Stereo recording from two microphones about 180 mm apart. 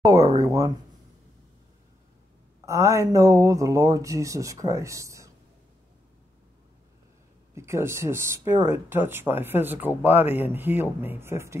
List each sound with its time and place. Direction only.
0.0 s a sound: 20° right (ahead or behind)
2.6 s speech: 15° right (ahead or behind)
7.5 s speech: 15° right (ahead or behind)